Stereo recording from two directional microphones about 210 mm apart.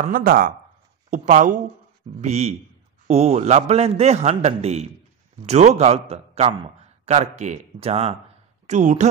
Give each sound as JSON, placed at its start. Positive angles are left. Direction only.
{"t": 0.0, "sound": "a man's voice", "side_deg": -45}